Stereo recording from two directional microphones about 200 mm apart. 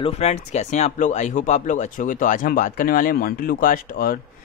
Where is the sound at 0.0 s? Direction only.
35° left (ahead or behind).